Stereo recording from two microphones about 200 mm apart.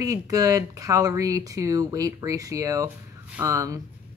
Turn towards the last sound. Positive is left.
turn(degrees=-15)  # may be behind; listen again after turning